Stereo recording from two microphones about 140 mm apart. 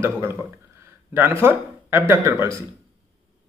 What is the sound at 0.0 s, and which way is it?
Speech, 15° right (ahead or behind).